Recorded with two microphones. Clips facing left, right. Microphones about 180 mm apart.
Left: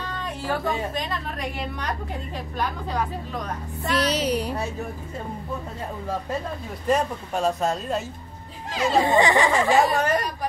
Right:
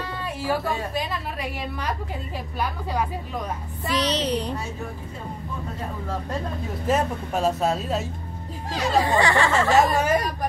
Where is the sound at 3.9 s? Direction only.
10° left (ahead or behind).